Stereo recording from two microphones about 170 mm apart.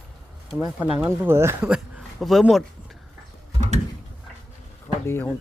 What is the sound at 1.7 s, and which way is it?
Speech, centre (ahead or behind).